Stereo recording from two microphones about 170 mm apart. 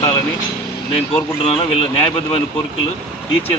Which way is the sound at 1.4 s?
35° left (ahead or behind).